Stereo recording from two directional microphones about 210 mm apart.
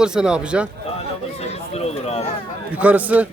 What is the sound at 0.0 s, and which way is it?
Speech, 5° right (ahead or behind).